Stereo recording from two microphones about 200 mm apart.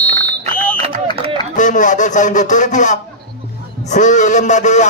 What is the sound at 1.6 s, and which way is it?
A man's voice, 40° left (ahead or behind).